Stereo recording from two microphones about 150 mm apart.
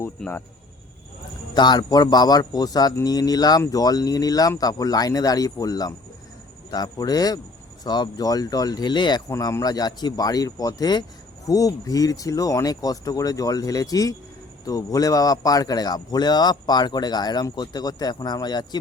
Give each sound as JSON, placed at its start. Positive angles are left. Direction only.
{"t": 0.2, "sound": "speech", "side_deg": 5}
{"t": 1.5, "sound": "speech", "side_deg": 30}